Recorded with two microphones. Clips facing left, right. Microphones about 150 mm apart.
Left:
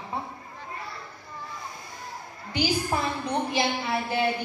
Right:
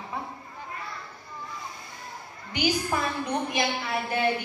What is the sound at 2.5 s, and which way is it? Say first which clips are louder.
A woman's voice: even; 35° left (ahead or behind).